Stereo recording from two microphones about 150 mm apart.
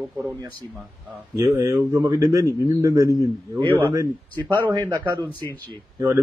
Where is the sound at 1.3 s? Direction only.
20° right (ahead or behind).